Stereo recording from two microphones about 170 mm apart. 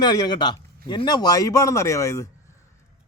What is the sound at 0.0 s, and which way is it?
Speech, 25° left (ahead or behind).